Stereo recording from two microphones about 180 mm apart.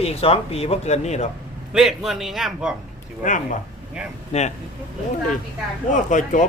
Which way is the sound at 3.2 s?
45° left (ahead or behind).